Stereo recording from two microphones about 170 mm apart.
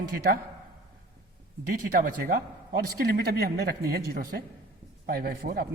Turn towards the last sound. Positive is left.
turn(degrees=-65)  # may be behind; listen again after turning